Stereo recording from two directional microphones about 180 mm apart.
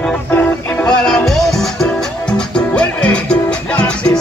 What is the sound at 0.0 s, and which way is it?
Music, 10° left (ahead or behind).